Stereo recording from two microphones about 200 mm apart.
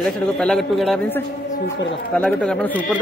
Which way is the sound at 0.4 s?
Centre (ahead or behind).